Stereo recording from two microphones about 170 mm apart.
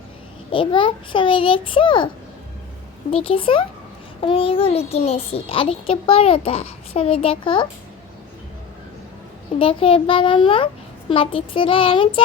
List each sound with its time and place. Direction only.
0.5 s a child's voice: 30° left (ahead or behind)
3.1 s a child's voice: 35° left (ahead or behind)
9.6 s a child's voice: 30° left (ahead or behind)